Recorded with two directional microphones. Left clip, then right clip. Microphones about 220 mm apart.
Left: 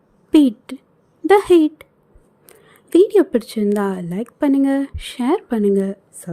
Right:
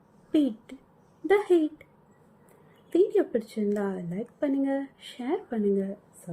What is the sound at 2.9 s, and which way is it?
A woman's voice, 50° left (ahead or behind).